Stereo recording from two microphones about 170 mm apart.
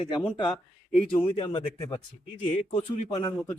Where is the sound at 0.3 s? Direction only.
25° left (ahead or behind).